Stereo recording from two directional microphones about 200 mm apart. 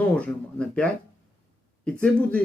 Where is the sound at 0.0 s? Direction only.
5° left (ahead or behind).